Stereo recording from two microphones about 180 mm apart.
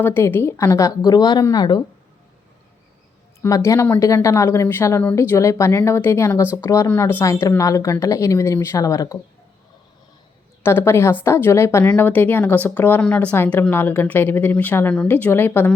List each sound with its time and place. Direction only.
0.0 s a woman's voice: 10° left (ahead or behind)
3.4 s a woman's voice: 15° left (ahead or behind)
10.6 s a woman's voice: 15° left (ahead or behind)